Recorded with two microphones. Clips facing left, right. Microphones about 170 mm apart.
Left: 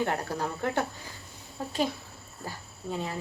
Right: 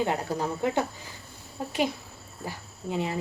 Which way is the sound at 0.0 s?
15° right (ahead or behind).